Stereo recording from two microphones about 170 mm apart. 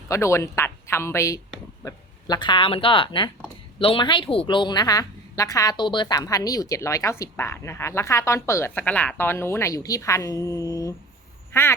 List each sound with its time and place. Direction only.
0.1 s a woman's voice: 15° left (ahead or behind)
11.5 s quack: 15° left (ahead or behind)